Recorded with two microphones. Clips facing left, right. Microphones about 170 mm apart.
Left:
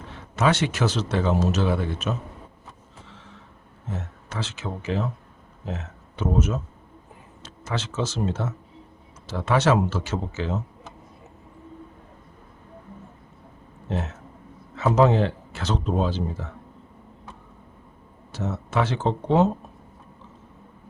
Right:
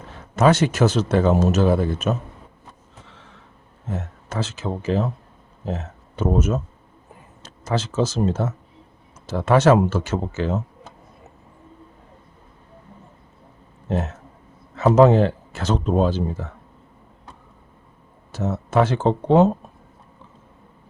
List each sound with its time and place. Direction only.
0.1 s speech: 40° right (ahead or behind)
3.9 s speech: 45° right (ahead or behind)
13.9 s speech: 45° right (ahead or behind)
18.3 s speech: 45° right (ahead or behind)